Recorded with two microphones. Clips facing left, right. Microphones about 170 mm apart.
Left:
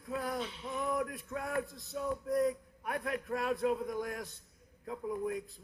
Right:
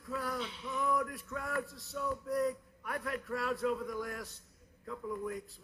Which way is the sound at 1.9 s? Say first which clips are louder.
Left 2 dB; 45° left (ahead or behind).